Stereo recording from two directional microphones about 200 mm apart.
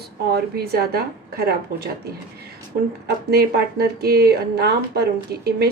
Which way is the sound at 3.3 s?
50° right (ahead or behind).